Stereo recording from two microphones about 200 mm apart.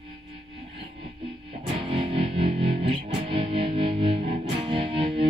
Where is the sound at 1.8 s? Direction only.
25° right (ahead or behind).